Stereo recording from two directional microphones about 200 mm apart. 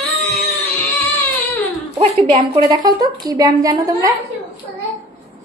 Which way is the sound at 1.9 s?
25° right (ahead or behind).